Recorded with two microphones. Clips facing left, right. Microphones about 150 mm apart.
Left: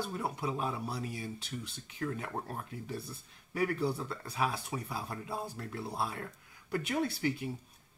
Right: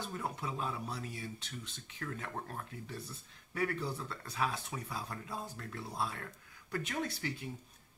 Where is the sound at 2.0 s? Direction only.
25° left (ahead or behind).